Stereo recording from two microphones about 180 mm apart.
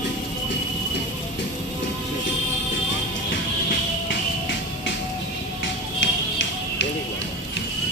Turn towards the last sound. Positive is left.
turn(degrees=90)